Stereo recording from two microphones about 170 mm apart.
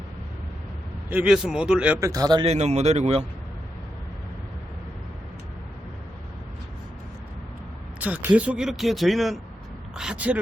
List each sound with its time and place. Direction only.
1.1 s speech: 5° right (ahead or behind)
2.0 s a man's voice: 20° right (ahead or behind)
2.5 s speech: 40° right (ahead or behind)
7.9 s speech: 10° right (ahead or behind)